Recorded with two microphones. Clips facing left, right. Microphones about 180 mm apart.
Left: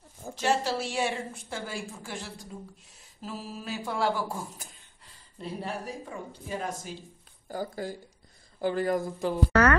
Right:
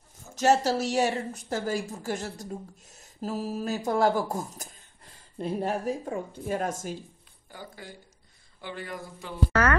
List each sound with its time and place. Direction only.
0.3 s a woman's voice: 45° right (ahead or behind)
7.4 s speech: 40° left (ahead or behind)